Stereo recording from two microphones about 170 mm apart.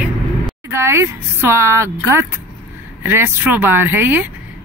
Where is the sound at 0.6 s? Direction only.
15° right (ahead or behind).